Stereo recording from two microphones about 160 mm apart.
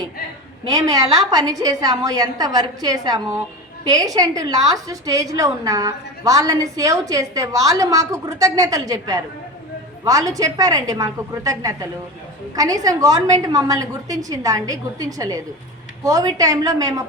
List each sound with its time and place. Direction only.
0.7 s a woman's voice: 25° right (ahead or behind)